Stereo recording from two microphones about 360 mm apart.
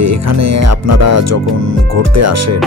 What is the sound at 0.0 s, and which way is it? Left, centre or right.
Speech, right.